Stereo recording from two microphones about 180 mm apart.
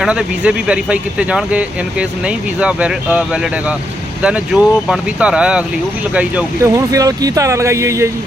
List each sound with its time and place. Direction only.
0.0 s speech: 5° right (ahead or behind)